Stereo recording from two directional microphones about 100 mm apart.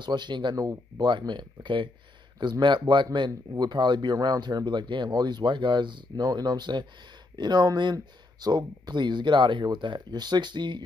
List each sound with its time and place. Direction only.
0.0 s speech: 50° right (ahead or behind)